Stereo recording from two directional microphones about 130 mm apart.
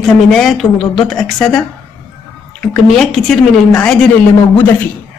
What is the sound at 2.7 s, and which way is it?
A woman's voice, 5° left (ahead or behind).